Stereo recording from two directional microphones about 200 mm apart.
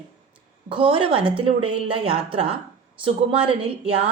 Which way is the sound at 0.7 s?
25° right (ahead or behind).